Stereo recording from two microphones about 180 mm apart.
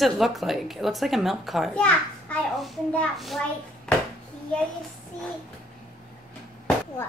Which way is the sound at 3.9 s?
5° left (ahead or behind).